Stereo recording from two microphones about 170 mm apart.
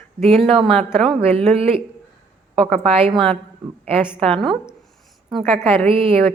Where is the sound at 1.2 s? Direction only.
35° right (ahead or behind).